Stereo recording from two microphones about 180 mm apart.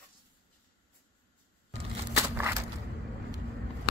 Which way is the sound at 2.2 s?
15° right (ahead or behind).